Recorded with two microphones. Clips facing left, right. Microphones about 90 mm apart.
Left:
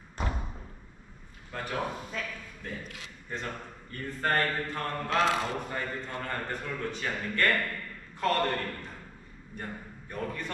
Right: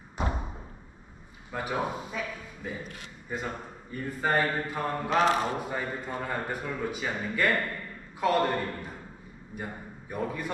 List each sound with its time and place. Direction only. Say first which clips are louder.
1.5 s a man's voice: right 3 dB; 10° right (ahead or behind)